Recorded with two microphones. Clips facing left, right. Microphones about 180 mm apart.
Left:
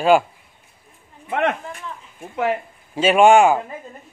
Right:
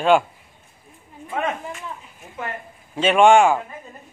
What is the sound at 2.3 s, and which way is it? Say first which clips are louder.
Speech: left 10 dB; 85° left.